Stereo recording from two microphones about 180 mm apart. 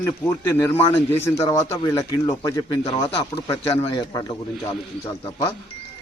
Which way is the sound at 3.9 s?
20° left (ahead or behind).